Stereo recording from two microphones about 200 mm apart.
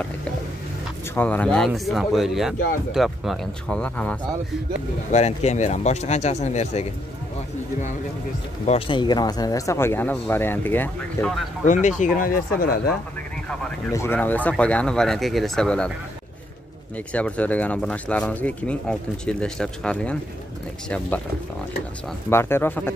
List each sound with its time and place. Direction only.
1.1 s speech: 10° left (ahead or behind)
5.1 s speech: 35° left (ahead or behind)
8.6 s speech: 25° left (ahead or behind); by 11.4 s 5° left (ahead or behind)
11.6 s speech: 40° left (ahead or behind)
13.9 s speech: 10° left (ahead or behind)
17.1 s speech: 5° left (ahead or behind)
22.3 s speech: 10° left (ahead or behind)